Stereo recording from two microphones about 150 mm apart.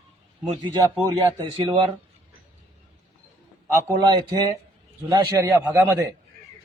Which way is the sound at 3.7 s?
25° right (ahead or behind).